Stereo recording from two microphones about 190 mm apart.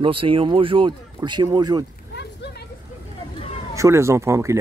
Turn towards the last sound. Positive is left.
turn(degrees=-15)  # may be behind; listen again after turning